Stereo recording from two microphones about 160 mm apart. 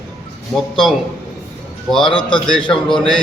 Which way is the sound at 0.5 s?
Centre (ahead or behind).